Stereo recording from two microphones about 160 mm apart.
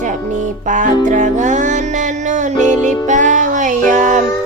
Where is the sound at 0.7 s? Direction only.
50° right (ahead or behind).